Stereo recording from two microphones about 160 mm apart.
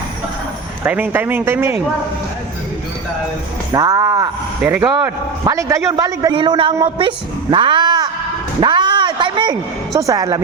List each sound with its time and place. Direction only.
0.9 s speech: 10° right (ahead or behind)
3.7 s a man's voice: 20° right (ahead or behind)
6.3 s speech: 30° right (ahead or behind)
7.5 s cat: 30° right (ahead or behind)
8.6 s a woman's voice: 30° right (ahead or behind)